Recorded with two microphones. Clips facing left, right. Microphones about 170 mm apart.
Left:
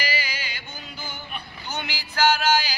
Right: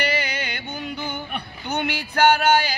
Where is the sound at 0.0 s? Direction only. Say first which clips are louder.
Right 6 dB; 65° right (ahead or behind).